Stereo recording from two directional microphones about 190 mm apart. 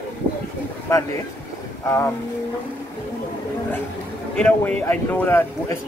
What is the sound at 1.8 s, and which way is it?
Speech, 15° left (ahead or behind).